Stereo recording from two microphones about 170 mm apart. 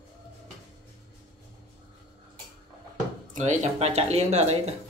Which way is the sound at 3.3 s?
45° right (ahead or behind).